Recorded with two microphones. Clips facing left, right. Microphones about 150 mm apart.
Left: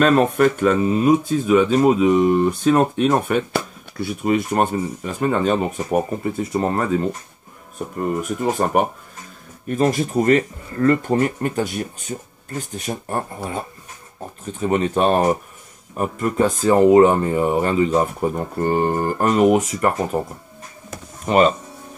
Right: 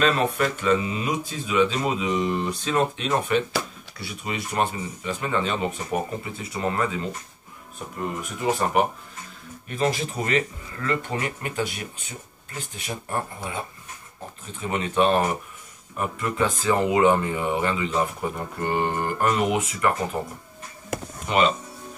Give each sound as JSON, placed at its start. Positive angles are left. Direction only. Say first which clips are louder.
{"t": 0.0, "sound": "speech", "louder": "left 7 dB", "side_deg": 50}
{"t": 8.2, "sound": "speech", "louder": "left 2 dB", "side_deg": 45}
{"t": 21.3, "sound": "speech", "louder": "left 6 dB", "side_deg": 45}